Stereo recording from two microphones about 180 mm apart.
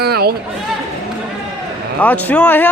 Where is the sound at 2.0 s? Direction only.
10° left (ahead or behind).